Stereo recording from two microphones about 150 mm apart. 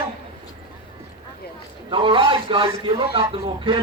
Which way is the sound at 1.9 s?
35° right (ahead or behind).